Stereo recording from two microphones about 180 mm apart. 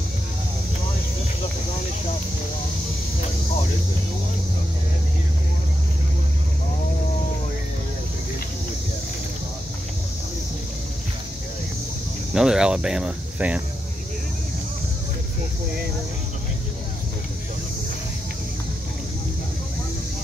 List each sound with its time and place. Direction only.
12.4 s speech: 5° right (ahead or behind)